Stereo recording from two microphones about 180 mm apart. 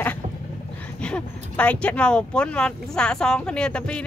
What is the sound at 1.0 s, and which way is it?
Speech, 5° left (ahead or behind).